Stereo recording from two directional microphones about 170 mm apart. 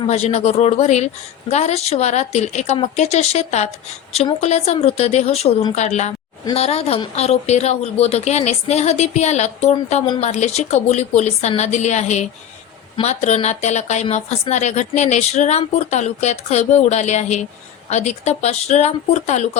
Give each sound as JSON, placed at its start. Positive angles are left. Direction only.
{"t": 0.1, "sound": "a woman's voice", "side_deg": 40}